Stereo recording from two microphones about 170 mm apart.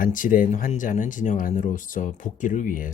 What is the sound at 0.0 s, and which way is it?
Speech, 50° left (ahead or behind).